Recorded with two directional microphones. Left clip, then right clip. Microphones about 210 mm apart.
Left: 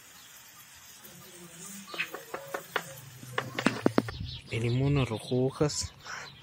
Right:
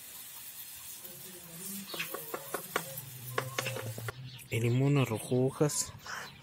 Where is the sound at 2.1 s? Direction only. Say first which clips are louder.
Left 1 dB; 60° right (ahead or behind).